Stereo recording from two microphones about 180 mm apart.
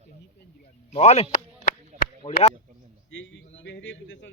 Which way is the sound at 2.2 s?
20° left (ahead or behind).